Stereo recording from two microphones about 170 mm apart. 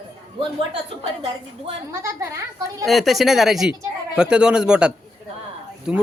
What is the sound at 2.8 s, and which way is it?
Speech, centre (ahead or behind).